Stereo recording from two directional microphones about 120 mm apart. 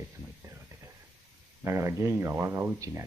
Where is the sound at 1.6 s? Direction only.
25° right (ahead or behind).